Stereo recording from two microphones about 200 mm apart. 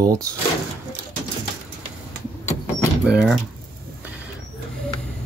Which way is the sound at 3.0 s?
5° right (ahead or behind).